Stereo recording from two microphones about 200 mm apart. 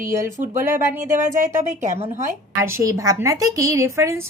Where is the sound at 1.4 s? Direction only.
35° right (ahead or behind).